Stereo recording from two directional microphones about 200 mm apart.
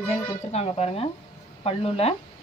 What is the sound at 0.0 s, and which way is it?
Speech, 30° left (ahead or behind).